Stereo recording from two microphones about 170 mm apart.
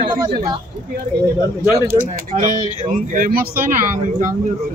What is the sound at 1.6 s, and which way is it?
Speech, 15° right (ahead or behind).